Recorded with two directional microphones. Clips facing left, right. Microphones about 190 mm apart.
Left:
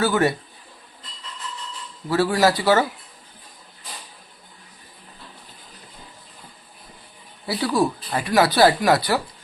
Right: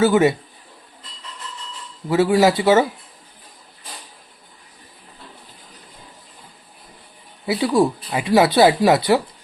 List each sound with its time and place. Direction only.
0.0 s speech: 20° right (ahead or behind)
2.0 s speech: 20° right (ahead or behind)
7.4 s speech: 20° right (ahead or behind)